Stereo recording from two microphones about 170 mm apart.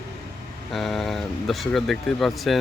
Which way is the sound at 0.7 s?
Centre (ahead or behind).